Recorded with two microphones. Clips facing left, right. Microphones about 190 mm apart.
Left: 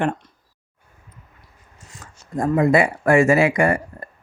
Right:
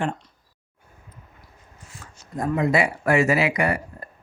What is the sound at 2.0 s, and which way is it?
Speech, 45° left (ahead or behind).